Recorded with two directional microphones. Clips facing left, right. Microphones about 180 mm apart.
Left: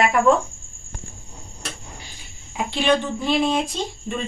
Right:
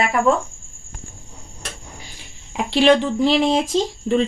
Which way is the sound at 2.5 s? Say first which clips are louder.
Right 5 dB; 90° right.